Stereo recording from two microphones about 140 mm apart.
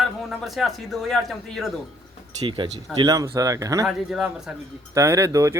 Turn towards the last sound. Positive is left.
turn(degrees=-20)  # may be behind; listen again after turning